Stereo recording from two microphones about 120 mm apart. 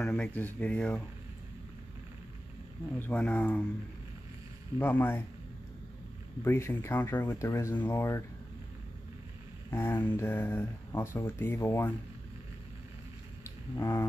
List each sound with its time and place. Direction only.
0.0 s speech: 10° left (ahead or behind)
3.0 s speech: 10° left (ahead or behind)
4.7 s speech: 15° left (ahead or behind)
6.4 s speech: 20° left (ahead or behind)
9.7 s speech: 20° left (ahead or behind)
13.7 s speech: 25° left (ahead or behind)